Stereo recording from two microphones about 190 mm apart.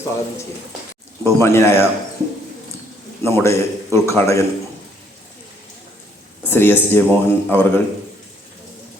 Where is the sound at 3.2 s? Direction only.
15° left (ahead or behind).